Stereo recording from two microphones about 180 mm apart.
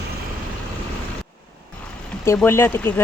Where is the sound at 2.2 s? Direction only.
15° left (ahead or behind).